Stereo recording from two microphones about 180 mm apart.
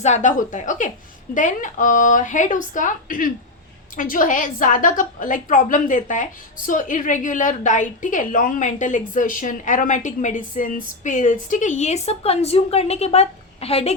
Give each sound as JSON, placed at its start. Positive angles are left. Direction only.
{"t": 0.0, "sound": "a woman's voice", "side_deg": 40}